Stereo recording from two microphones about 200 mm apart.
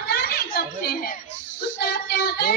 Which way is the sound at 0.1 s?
50° left (ahead or behind).